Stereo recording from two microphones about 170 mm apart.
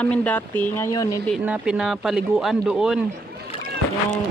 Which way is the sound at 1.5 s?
5° right (ahead or behind).